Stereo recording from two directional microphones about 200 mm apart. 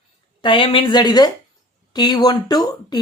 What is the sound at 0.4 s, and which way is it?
A woman's voice, 25° left (ahead or behind).